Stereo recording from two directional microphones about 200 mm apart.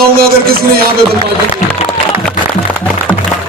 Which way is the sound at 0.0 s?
50° right (ahead or behind).